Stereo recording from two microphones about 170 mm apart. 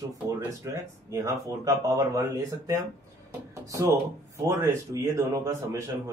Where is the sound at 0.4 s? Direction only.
15° right (ahead or behind).